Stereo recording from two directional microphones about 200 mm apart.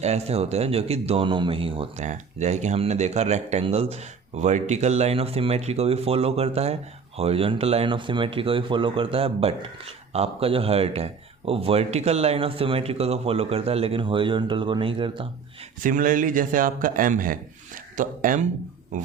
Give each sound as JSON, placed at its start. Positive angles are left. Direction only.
{"t": 0.0, "sound": "speech", "side_deg": -30}
{"t": 15.8, "sound": "speech", "side_deg": -40}